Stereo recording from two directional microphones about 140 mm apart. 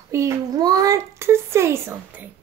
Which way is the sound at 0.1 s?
20° right (ahead or behind).